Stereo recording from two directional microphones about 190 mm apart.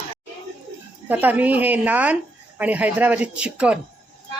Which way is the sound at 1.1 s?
10° right (ahead or behind).